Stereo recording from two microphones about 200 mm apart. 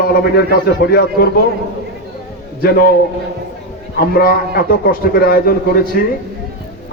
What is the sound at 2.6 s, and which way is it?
Speech, 50° left (ahead or behind).